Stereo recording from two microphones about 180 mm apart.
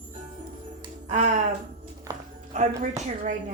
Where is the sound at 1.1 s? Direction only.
40° right (ahead or behind).